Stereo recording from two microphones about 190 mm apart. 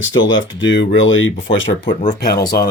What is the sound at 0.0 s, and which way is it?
Speech, 85° left.